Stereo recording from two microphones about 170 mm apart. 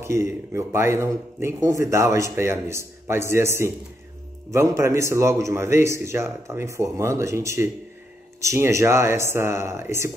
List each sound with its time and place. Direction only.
0.0 s a man's voice: 15° right (ahead or behind)